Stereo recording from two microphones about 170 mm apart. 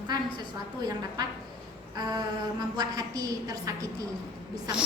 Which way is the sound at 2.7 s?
25° right (ahead or behind).